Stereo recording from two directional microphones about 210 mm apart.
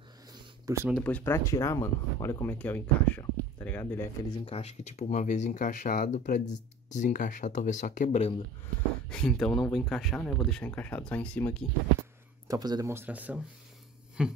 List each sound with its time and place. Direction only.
0.3 s a sound: 15° right (ahead or behind)
0.8 s speech: 5° left (ahead or behind)
4.5 s speech: 30° left (ahead or behind)
9.1 s speech: 5° left (ahead or behind)
12.4 s speech: 20° right (ahead or behind)
14.2 s a sound: 5° right (ahead or behind)